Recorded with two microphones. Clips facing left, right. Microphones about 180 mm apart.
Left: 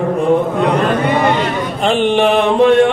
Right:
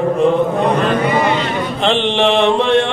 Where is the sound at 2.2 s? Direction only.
45° left (ahead or behind).